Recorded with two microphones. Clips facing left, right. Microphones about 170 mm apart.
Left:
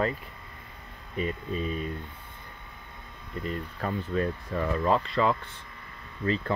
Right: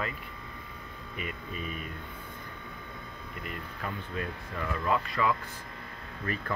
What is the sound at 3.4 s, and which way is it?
Speech, 35° left (ahead or behind).